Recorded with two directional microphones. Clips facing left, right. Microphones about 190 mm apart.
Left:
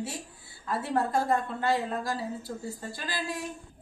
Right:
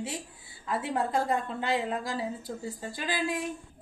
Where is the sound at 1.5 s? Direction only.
15° right (ahead or behind).